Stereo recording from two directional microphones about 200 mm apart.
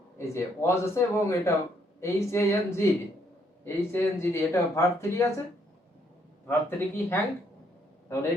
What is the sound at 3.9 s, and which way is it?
A man's voice, 15° left (ahead or behind).